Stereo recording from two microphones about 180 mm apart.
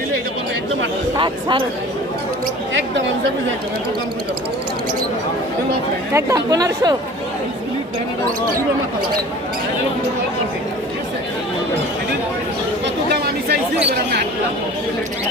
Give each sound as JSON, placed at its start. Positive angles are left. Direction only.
{"t": 1.2, "sound": "speech", "side_deg": -30}
{"t": 6.1, "sound": "speech", "side_deg": -20}
{"t": 12.8, "sound": "chatter", "side_deg": -65}
{"t": 13.8, "sound": "speech", "side_deg": -65}